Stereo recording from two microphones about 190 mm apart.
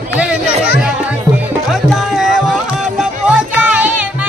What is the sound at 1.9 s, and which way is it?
Music, centre (ahead or behind).